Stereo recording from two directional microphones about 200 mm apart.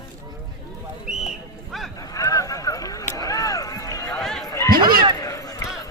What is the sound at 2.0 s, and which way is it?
Run, 15° left (ahead or behind).